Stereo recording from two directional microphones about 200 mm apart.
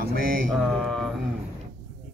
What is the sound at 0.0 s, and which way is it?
Mantra, 45° right (ahead or behind).